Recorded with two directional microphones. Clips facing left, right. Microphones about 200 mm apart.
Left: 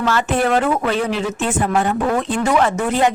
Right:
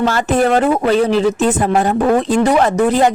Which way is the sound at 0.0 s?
40° right (ahead or behind).